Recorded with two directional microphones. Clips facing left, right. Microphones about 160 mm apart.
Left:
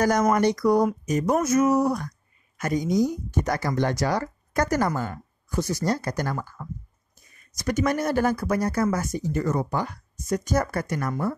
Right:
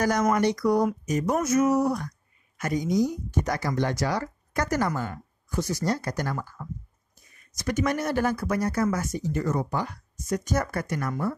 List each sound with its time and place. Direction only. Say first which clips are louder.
0.0 s speech: left 2 dB; 45° left (ahead or behind)